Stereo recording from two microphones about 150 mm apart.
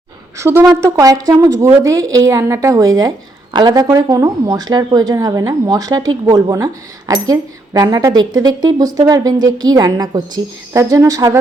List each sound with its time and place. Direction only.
0.3 s a woman's voice: 20° right (ahead or behind)